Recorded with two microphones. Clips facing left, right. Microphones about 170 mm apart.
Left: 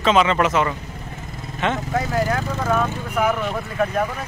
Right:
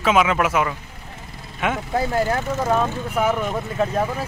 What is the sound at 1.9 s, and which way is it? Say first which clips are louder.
Speech: right 3 dB; 30° right (ahead or behind).